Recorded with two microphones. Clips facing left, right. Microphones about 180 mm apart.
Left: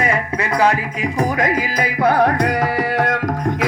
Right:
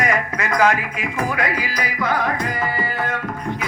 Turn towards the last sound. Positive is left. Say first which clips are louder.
# left 6 dB
turn(degrees=75)  # may be behind; listen again after turning